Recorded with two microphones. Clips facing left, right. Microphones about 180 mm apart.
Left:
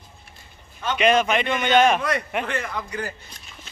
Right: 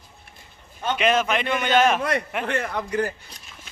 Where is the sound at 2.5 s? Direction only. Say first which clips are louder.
Right 3 dB; 55° right (ahead or behind).